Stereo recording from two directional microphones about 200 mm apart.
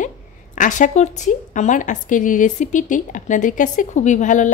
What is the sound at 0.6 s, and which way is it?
A woman's voice, 40° left (ahead or behind).